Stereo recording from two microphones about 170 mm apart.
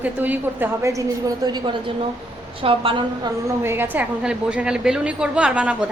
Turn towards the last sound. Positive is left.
turn(degrees=-5)  # may be behind; listen again after turning